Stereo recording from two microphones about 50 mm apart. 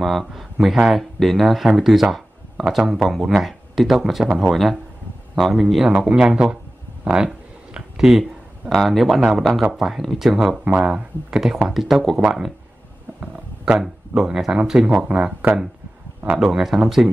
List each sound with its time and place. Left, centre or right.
0.0 s a man's voice: centre
5.9 s speech: centre
7.1 s a sound: centre
8.7 s speech: centre
10.6 s speech: right
10.9 s speech: centre
11.7 s speech: centre
13.7 s speech: centre
16.3 s speech: centre